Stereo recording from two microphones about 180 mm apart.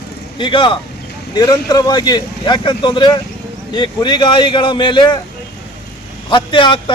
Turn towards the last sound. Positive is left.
turn(degrees=25)  # may be behind; listen again after turning